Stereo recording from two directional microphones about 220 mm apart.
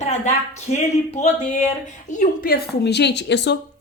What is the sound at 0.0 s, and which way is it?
A woman's voice, 30° left (ahead or behind).